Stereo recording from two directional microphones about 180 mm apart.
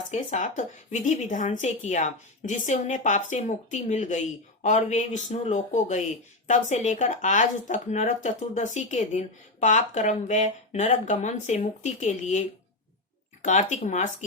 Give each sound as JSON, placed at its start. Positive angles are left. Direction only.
{"t": 0.1, "sound": "speech", "side_deg": 40}
{"t": 13.4, "sound": "speech", "side_deg": 40}